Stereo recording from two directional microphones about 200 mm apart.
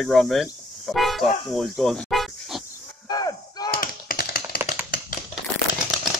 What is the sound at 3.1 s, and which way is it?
Chop, 20° left (ahead or behind).